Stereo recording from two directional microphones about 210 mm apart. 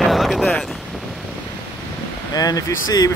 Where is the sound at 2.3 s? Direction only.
15° left (ahead or behind).